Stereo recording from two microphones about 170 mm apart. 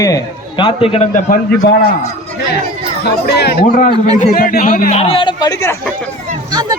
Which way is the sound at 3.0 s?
70° left (ahead or behind).